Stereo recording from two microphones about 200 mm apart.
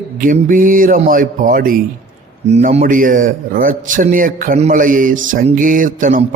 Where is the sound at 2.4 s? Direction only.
35° right (ahead or behind).